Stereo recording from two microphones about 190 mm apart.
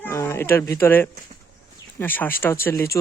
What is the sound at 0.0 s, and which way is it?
Speech, 15° left (ahead or behind).